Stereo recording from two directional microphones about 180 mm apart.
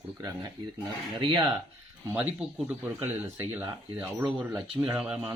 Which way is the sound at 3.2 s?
15° right (ahead or behind).